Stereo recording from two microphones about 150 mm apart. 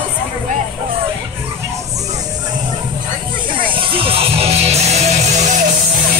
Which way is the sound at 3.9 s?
40° right (ahead or behind).